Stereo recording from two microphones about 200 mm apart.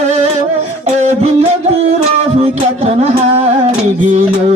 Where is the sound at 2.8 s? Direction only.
30° right (ahead or behind).